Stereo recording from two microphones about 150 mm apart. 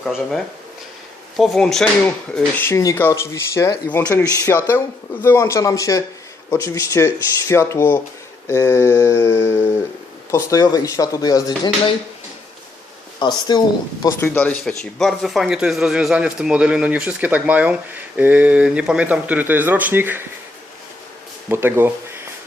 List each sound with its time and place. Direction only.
0.0 s speech: centre (ahead or behind); by 11.7 s 25° left (ahead or behind)
13.1 s speech: 30° left (ahead or behind)
14.2 s speech: 10° left (ahead or behind)
14.6 s speech: centre (ahead or behind); by 20.2 s 15° right (ahead or behind)
21.5 s speech: 15° right (ahead or behind)